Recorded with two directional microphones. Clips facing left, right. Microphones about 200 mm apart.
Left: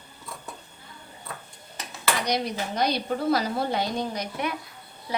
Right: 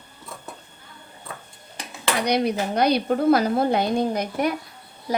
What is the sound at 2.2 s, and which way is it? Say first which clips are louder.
A woman's voice: right 6 dB; 60° right (ahead or behind).